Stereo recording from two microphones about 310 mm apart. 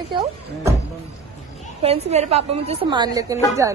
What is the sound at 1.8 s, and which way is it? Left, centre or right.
A woman's voice, centre.